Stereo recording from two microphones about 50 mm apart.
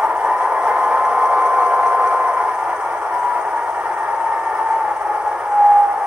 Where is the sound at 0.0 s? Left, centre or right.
Centre.